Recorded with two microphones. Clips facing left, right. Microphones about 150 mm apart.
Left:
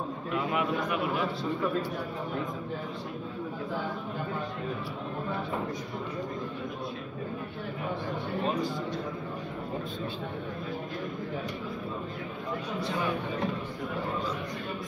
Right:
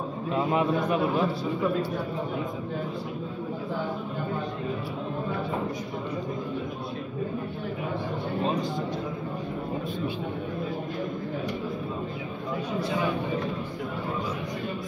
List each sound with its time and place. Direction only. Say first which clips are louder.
0.3 s a man's voice: right 5 dB; 30° right (ahead or behind)